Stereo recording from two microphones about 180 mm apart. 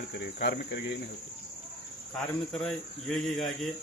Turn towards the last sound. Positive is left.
turn(degrees=0)  # may be behind; listen again after turning